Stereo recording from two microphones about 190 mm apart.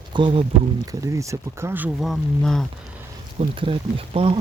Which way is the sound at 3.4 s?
30° right (ahead or behind).